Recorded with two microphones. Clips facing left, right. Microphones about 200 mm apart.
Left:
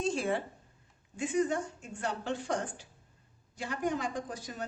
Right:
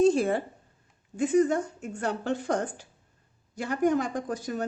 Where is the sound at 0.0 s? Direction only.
40° right (ahead or behind).